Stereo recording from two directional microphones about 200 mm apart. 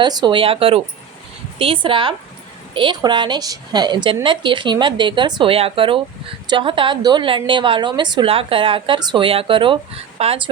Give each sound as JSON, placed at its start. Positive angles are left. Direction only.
{"t": 0.0, "sound": "a woman's voice", "side_deg": -20}